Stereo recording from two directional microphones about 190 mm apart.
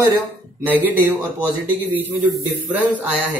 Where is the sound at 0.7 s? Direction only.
10° right (ahead or behind).